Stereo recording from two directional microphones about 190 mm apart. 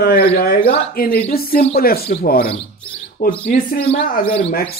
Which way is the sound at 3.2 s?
50° left (ahead or behind).